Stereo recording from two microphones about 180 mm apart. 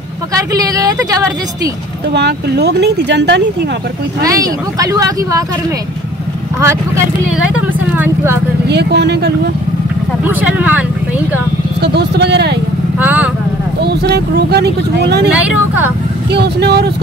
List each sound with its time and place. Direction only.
0.3 s speech: 20° right (ahead or behind)
2.1 s speech: 70° right (ahead or behind)
4.2 s speech: 20° right (ahead or behind)
7.5 s speech: 10° right (ahead or behind)
8.6 s speech: 70° right (ahead or behind)
10.2 s speech: 10° right (ahead or behind)
11.8 s speech: 65° right (ahead or behind)
13.0 s speech: 10° right (ahead or behind)
13.8 s speech: 65° right (ahead or behind)
15.3 s speech: 10° right (ahead or behind)
16.3 s speech: 65° right (ahead or behind)